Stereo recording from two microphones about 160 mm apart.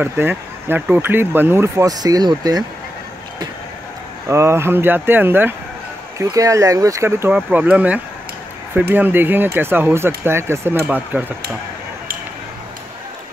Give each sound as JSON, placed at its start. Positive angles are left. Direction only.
{"t": 0.0, "sound": "speech", "side_deg": -15}
{"t": 4.3, "sound": "speech", "side_deg": -15}